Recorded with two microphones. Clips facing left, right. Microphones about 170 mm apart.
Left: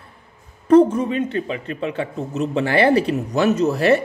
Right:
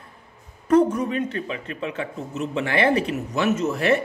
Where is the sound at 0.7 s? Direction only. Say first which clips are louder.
Left 5 dB; 30° left (ahead or behind).